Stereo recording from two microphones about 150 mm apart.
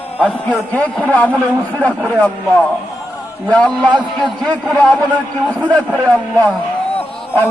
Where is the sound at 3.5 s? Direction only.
10° left (ahead or behind).